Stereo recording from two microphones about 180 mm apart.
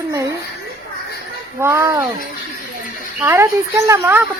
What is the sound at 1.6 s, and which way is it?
Speech, 15° right (ahead or behind).